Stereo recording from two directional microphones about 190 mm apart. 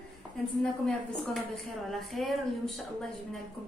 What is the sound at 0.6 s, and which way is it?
A woman's voice, centre (ahead or behind).